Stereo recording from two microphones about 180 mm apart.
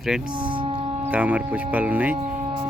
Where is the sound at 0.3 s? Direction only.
30° right (ahead or behind).